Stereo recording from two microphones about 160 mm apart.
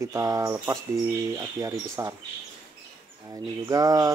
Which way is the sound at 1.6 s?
15° right (ahead or behind).